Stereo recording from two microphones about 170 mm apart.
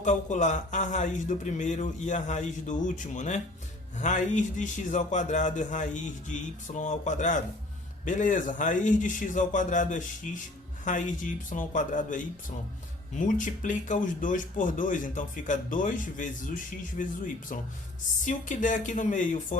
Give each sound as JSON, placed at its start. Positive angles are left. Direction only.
{"t": 0.0, "sound": "speech", "side_deg": 45}
{"t": 18.3, "sound": "speech", "side_deg": 50}